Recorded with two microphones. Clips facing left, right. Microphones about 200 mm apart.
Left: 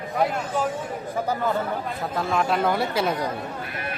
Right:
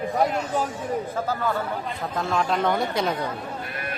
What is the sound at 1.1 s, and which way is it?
Speech, 15° left (ahead or behind).